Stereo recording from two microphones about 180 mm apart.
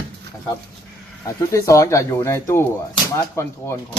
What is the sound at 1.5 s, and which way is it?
Speech, 15° left (ahead or behind).